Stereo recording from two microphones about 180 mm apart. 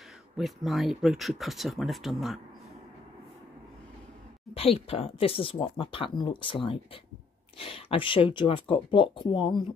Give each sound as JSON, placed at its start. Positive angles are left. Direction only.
{"t": 0.4, "sound": "speech", "side_deg": 0}
{"t": 4.6, "sound": "speech", "side_deg": 35}